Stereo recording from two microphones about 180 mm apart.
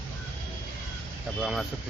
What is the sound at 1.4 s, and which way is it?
Speech, centre (ahead or behind).